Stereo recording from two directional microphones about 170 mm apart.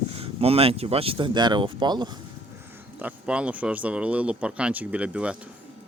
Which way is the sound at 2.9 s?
10° right (ahead or behind).